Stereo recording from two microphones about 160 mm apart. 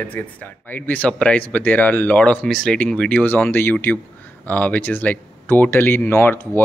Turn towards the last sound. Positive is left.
turn(degrees=15)  # may be behind; listen again after turning